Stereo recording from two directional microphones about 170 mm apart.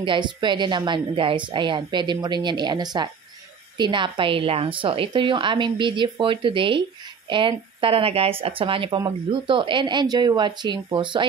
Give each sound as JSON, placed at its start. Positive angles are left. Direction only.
{"t": 0.0, "sound": "a woman's voice", "side_deg": -30}